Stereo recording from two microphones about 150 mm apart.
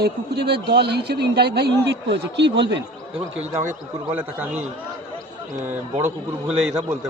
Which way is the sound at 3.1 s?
45° right (ahead or behind).